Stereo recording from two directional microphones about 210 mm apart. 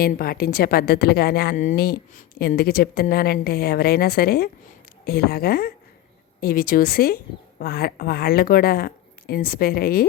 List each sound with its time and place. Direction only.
0.0 s a woman's voice: 45° left (ahead or behind)